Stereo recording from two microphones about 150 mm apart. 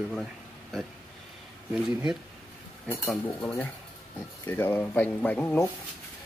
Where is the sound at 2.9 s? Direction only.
15° left (ahead or behind).